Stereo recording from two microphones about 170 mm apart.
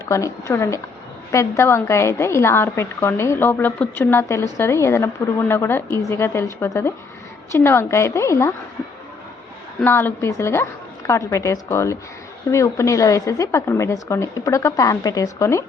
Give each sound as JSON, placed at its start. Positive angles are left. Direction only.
{"t": 0.0, "sound": "a woman's voice", "side_deg": 20}
{"t": 9.8, "sound": "a woman's voice", "side_deg": 15}